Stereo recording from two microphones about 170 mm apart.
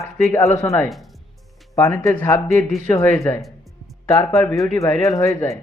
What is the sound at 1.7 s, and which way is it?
Speech, 20° left (ahead or behind).